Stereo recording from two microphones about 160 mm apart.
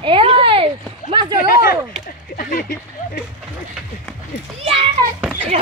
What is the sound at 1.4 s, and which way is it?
Speech, 65° left (ahead or behind).